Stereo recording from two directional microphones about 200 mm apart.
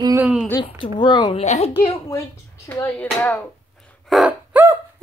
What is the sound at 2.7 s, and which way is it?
Speech, 10° left (ahead or behind).